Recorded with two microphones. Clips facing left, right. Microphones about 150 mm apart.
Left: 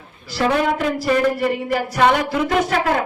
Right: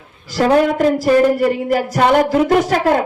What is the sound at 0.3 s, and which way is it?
Speech, 40° right (ahead or behind).